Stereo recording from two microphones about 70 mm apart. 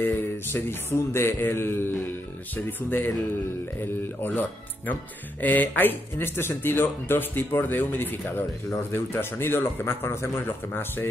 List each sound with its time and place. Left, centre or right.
0.0 s mantra: left
4.2 s speech: left
8.9 s mantra: left